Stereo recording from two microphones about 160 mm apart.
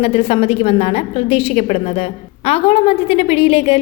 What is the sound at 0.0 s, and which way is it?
A woman's voice, 40° left (ahead or behind).